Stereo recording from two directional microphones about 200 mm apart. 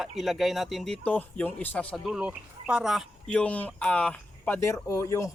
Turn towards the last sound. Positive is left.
turn(degrees=15)  # may be behind; listen again after turning